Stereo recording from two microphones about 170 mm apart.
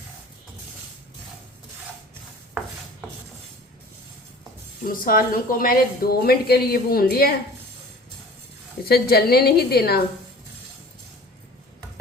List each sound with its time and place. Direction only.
4.9 s a woman's voice: 55° left (ahead or behind)
8.9 s a woman's voice: 65° left (ahead or behind)